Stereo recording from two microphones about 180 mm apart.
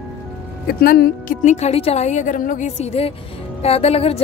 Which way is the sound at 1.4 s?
40° left (ahead or behind).